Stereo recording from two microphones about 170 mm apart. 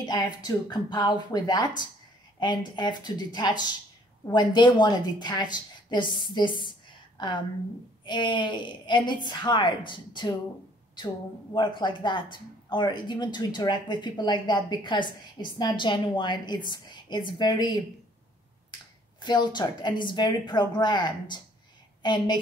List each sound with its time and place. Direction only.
0.0 s a woman's voice: 25° left (ahead or behind)
11.5 s speech: 30° left (ahead or behind)
19.2 s speech: 25° left (ahead or behind)